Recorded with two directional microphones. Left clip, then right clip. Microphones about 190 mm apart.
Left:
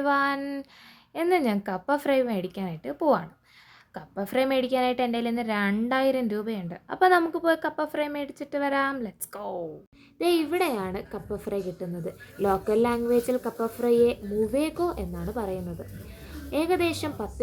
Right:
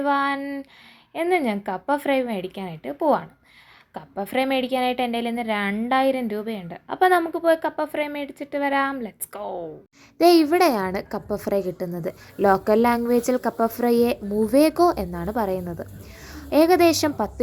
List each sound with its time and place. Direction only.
0.0 s a woman's voice: 5° left (ahead or behind)
10.2 s a woman's voice: 35° right (ahead or behind)